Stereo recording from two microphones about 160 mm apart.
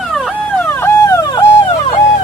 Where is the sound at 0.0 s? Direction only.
Centre (ahead or behind).